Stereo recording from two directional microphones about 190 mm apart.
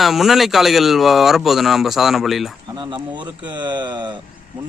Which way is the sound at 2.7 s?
25° right (ahead or behind).